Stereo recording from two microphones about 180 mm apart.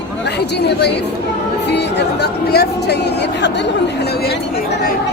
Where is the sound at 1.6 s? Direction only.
70° left (ahead or behind).